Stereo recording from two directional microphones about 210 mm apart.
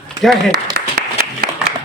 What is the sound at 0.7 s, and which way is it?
Applause, 50° right (ahead or behind).